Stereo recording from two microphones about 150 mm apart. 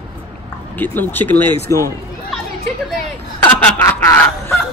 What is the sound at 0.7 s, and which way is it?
Speech, 10° left (ahead or behind).